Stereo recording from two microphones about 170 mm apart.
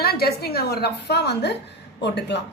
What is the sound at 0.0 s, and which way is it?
A woman's voice, 65° left (ahead or behind).